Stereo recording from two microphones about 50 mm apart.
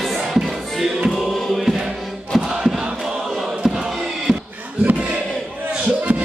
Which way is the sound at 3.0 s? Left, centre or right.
Centre.